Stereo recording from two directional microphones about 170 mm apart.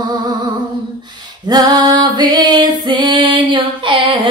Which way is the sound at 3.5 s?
30° right (ahead or behind).